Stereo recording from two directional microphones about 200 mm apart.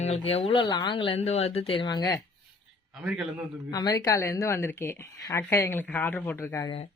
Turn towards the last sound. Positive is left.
turn(degrees=15)  # may be behind; listen again after turning